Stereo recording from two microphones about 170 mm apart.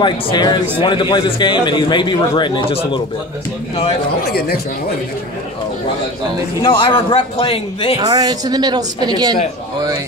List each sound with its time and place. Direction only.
0.0 s a man's voice: 25° left (ahead or behind)
4.3 s speech: 65° left (ahead or behind)
6.6 s a man's voice: 30° left (ahead or behind)
8.0 s a woman's voice: 25° right (ahead or behind)